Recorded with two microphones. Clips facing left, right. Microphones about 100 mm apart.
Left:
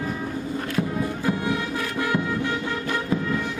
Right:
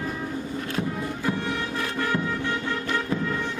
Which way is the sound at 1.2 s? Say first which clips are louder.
Left 1 dB; 15° left (ahead or behind).